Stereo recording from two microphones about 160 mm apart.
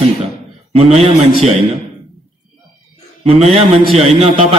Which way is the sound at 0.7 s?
40° right (ahead or behind).